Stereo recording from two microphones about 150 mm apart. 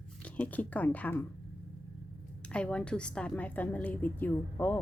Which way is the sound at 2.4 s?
5° left (ahead or behind).